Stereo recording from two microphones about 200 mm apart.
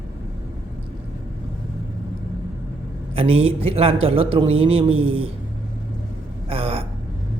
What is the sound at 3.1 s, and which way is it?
A man's voice, 30° right (ahead or behind).